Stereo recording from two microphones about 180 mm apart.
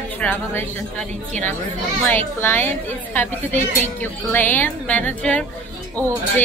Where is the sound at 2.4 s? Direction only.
10° left (ahead or behind).